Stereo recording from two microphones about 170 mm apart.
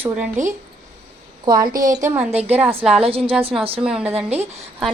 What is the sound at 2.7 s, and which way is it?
Speech, 35° right (ahead or behind).